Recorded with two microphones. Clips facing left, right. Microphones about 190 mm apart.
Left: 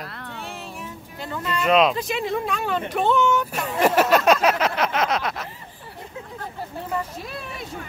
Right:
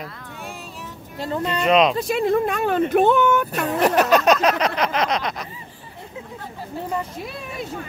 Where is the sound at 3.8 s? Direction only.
5° left (ahead or behind).